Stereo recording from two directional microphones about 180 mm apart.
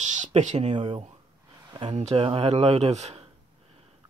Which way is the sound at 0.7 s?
25° right (ahead or behind).